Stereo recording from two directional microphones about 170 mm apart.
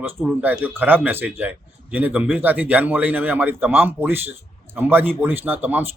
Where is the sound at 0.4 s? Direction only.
10° right (ahead or behind).